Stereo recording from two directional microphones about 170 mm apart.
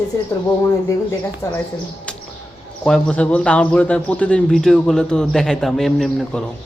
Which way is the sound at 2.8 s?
5° left (ahead or behind).